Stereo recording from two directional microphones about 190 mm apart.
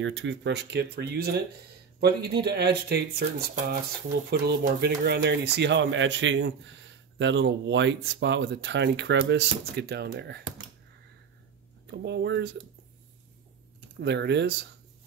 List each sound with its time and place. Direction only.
0.0 s speech: 75° right (ahead or behind)
11.9 s speech: 65° right (ahead or behind)
14.0 s speech: 65° right (ahead or behind)